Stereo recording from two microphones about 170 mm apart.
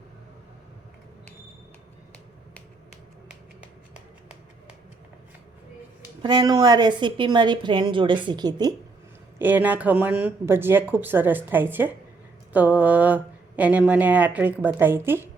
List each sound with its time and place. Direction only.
6.2 s a woman's voice: 25° right (ahead or behind)
9.4 s speech: 10° right (ahead or behind)